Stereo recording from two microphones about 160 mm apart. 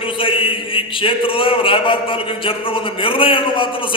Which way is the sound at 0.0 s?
35° left (ahead or behind).